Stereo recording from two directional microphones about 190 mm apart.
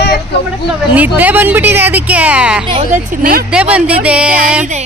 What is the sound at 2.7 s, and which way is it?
Speech, 35° right (ahead or behind).